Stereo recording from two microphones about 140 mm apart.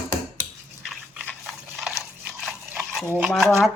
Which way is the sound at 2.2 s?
10° right (ahead or behind).